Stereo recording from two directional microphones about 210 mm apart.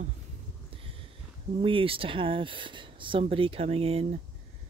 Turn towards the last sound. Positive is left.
turn(degrees=-30)  # may be behind; listen again after turning